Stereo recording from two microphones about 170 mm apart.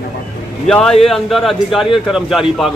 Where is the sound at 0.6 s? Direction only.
5° left (ahead or behind).